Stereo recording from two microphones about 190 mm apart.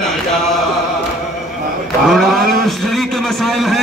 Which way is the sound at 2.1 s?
Centre (ahead or behind).